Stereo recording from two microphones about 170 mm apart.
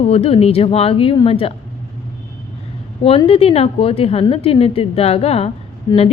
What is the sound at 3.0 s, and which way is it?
A woman's voice, 35° left (ahead or behind).